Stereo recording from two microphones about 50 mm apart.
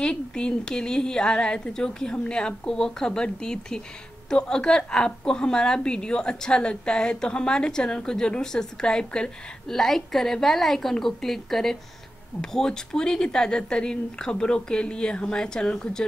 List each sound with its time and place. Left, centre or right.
0.0 s a woman's voice: centre